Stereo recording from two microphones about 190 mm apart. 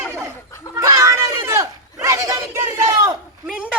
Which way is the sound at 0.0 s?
15° right (ahead or behind).